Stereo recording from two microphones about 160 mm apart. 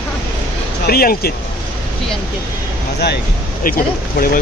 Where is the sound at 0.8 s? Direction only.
70° left (ahead or behind).